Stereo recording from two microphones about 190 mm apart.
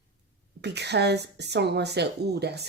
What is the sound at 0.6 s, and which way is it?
Speech, 60° right (ahead or behind).